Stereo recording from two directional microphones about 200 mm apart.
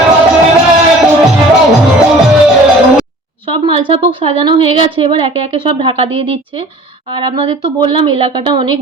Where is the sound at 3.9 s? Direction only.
30° right (ahead or behind).